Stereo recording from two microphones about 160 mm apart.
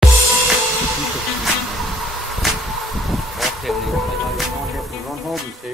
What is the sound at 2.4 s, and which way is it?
Vehicle, centre (ahead or behind).